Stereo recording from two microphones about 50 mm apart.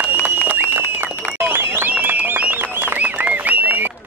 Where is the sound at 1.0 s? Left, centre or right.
Right.